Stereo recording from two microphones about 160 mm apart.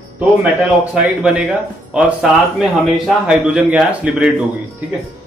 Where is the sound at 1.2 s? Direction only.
5° right (ahead or behind).